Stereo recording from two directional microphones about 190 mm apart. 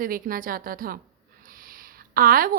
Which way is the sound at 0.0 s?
50° right (ahead or behind).